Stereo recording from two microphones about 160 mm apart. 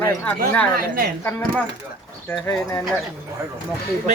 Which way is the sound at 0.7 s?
70° right (ahead or behind).